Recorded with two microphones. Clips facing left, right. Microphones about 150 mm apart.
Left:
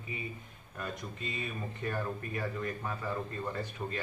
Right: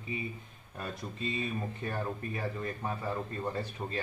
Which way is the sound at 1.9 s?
30° right (ahead or behind).